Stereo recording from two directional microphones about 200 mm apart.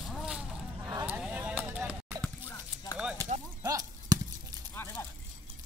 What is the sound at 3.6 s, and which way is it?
Chop, 20° right (ahead or behind).